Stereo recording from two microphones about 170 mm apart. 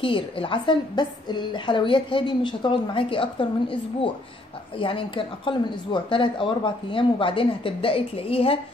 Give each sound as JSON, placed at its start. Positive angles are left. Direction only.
{"t": 0.0, "sound": "a woman's voice", "side_deg": 30}
{"t": 4.7, "sound": "speech", "side_deg": 30}